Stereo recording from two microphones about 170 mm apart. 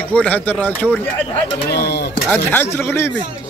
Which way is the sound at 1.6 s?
75° left (ahead or behind).